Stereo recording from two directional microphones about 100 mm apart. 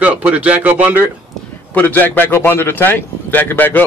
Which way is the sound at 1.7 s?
20° left (ahead or behind).